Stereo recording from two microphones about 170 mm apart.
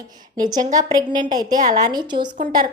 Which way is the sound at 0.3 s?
25° right (ahead or behind).